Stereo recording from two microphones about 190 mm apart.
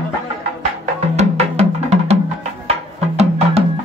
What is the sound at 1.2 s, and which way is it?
Music, 35° right (ahead or behind).